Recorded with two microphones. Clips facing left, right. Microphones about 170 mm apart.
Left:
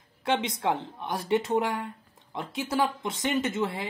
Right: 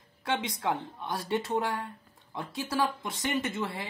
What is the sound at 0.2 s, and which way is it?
A woman's voice, 20° left (ahead or behind).